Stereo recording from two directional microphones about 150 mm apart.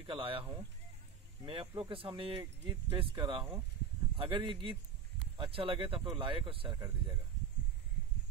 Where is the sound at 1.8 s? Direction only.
35° right (ahead or behind).